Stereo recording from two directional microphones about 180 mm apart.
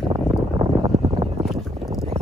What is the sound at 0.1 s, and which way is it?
Boat, 25° right (ahead or behind).